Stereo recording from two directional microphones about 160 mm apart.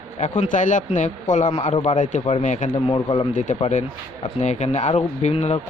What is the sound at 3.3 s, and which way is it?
Speech, 50° left (ahead or behind).